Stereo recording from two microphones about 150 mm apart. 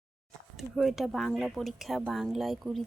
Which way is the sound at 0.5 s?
Centre (ahead or behind).